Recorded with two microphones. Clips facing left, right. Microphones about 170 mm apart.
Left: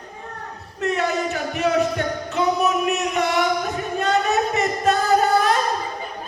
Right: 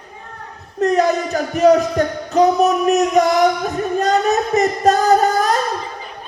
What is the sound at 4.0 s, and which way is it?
Singing, 40° right (ahead or behind).